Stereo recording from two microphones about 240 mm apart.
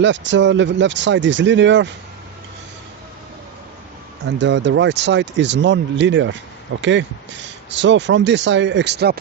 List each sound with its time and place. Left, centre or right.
0.0 s speech: right
4.3 s speech: right